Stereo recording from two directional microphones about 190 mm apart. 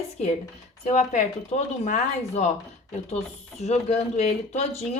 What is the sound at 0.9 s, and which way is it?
Speech, 35° left (ahead or behind).